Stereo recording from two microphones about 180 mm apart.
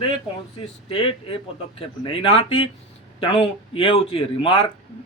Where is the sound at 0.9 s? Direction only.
30° left (ahead or behind).